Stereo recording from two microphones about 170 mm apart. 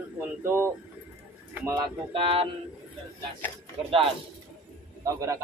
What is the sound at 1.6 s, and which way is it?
Speech, 25° right (ahead or behind).